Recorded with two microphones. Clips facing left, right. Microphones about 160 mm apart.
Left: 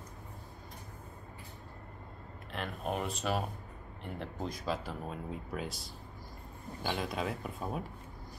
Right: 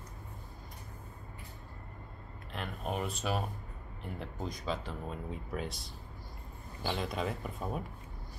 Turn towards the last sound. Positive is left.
turn(degrees=0)  # may be behind; listen again after turning